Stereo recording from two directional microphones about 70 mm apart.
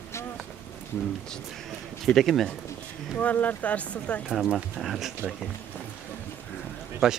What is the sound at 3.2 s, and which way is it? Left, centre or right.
Speech, left.